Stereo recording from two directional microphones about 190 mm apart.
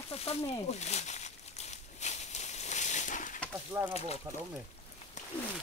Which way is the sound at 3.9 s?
35° left (ahead or behind).